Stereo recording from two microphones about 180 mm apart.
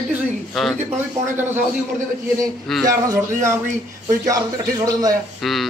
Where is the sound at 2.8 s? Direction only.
20° right (ahead or behind).